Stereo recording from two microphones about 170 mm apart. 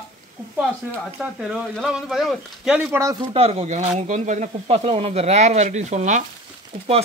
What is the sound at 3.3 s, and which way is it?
Speech, 35° right (ahead or behind).